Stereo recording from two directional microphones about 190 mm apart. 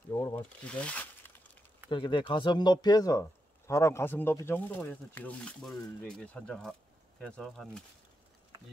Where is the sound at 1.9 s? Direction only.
25° left (ahead or behind); by 7.8 s 5° left (ahead or behind).